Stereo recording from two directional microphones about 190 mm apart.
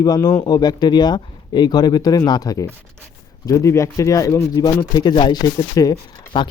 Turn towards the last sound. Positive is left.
turn(degrees=20)  # may be behind; listen again after turning